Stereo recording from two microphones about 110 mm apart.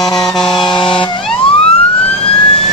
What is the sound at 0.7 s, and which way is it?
Vehicle, 45° left (ahead or behind).